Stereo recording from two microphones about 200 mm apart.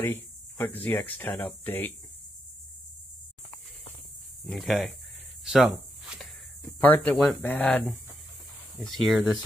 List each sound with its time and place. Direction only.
0.0 s speech: 10° left (ahead or behind)
4.5 s speech: centre (ahead or behind)
5.4 s a sound: centre (ahead or behind)
6.8 s speech: 10° left (ahead or behind)